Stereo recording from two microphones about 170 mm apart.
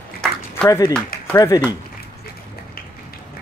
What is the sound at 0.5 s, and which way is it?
Speech, 15° left (ahead or behind).